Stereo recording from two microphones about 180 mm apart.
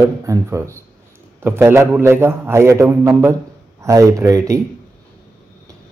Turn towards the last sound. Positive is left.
turn(degrees=-20)  # may be behind; listen again after turning